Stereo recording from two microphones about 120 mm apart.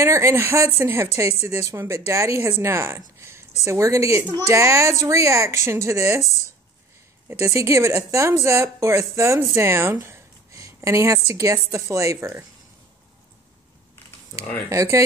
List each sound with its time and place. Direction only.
0.0 s speech: 25° right (ahead or behind)
7.2 s a woman's voice: 25° right (ahead or behind)
14.7 s speech: 25° right (ahead or behind)